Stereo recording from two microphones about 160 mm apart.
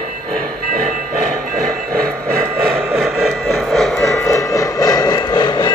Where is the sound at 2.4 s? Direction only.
Centre (ahead or behind).